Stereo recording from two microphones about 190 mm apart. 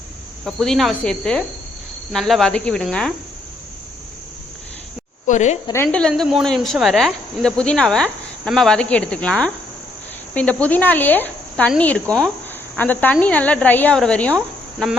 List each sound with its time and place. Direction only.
0.4 s speech: centre (ahead or behind)
5.2 s a sound: 40° left (ahead or behind)
5.6 s speech: 10° left (ahead or behind)